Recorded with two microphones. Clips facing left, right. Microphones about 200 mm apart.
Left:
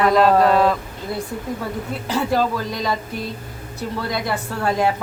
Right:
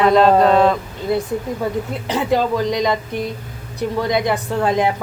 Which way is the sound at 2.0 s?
20° right (ahead or behind).